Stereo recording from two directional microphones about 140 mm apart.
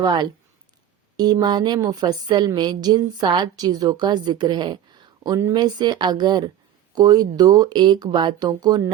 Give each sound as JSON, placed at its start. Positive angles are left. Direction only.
{"t": 0.0, "sound": "a woman's voice", "side_deg": -30}